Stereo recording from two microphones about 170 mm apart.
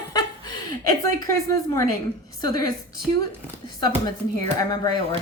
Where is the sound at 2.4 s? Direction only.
20° left (ahead or behind).